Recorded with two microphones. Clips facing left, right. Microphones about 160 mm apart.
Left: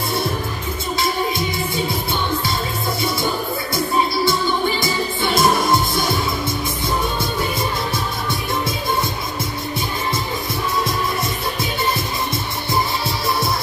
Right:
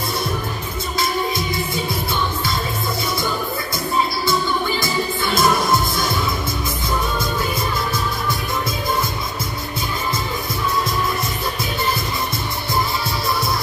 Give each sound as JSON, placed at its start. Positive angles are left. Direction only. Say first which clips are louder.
{"t": 5.2, "sound": "music", "louder": "left 2 dB", "side_deg": 25}